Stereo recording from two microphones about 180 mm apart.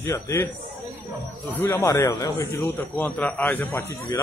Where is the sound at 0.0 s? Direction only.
15° left (ahead or behind).